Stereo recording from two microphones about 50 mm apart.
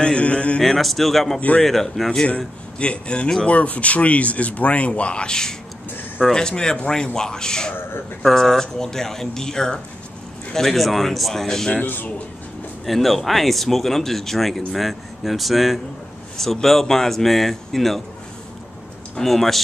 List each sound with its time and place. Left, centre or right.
0.0 s a sound: left
0.6 s speech: centre
2.2 s speech: left
3.4 s speech: left; by 11.8 s centre
11.8 s speech: left
12.8 s speech: centre
19.1 s speech: centre